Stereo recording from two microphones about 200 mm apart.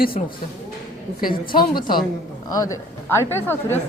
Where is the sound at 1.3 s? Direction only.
20° left (ahead or behind).